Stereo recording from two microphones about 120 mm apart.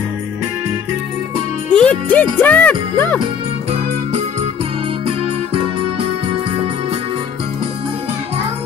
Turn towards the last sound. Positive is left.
turn(degrees=-50)  # may be behind; listen again after turning